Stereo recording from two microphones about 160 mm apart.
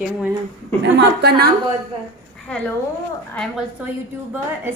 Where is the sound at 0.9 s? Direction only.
90° right.